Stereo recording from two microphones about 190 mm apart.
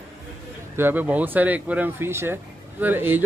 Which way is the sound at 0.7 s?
10° right (ahead or behind).